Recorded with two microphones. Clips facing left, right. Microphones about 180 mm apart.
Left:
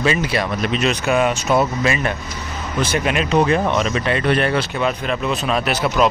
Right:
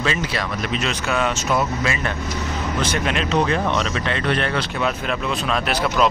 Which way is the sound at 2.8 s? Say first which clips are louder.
Left 5 dB; 5° left (ahead or behind).